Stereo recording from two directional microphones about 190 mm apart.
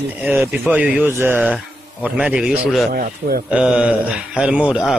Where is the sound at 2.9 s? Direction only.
50° right (ahead or behind).